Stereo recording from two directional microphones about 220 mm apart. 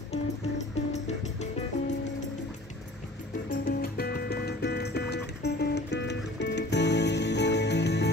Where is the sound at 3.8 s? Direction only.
45° left (ahead or behind).